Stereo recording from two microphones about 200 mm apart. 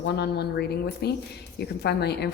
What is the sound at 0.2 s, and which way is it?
A woman's voice, 55° left (ahead or behind).